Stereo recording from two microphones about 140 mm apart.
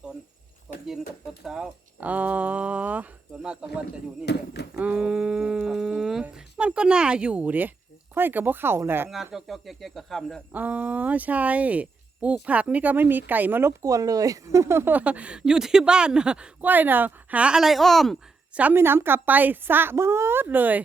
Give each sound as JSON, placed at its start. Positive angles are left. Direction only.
{"t": 0.7, "sound": "a sound", "side_deg": -5}
{"t": 1.5, "sound": "speech", "side_deg": -5}
{"t": 4.8, "sound": "humming", "side_deg": -10}
{"t": 8.1, "sound": "speech", "side_deg": -15}
{"t": 9.3, "sound": "speech", "side_deg": 0}
{"t": 10.5, "sound": "speech", "side_deg": -10}
{"t": 18.6, "sound": "speech", "side_deg": -15}